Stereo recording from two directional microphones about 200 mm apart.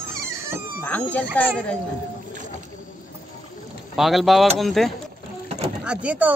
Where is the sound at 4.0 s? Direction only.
Centre (ahead or behind).